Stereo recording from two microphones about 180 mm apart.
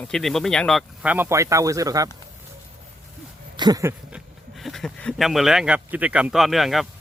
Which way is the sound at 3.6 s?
20° right (ahead or behind).